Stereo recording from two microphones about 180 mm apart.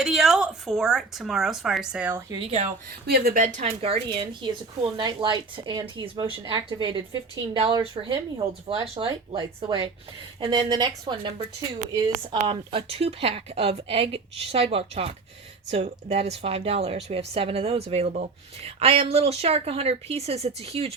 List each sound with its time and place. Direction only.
0.0 s speech: centre (ahead or behind)
2.3 s speech: 35° right (ahead or behind)
3.1 s speech: 55° right (ahead or behind)
3.6 s a woman's voice: 35° right (ahead or behind)
12.5 s speech: 30° right (ahead or behind)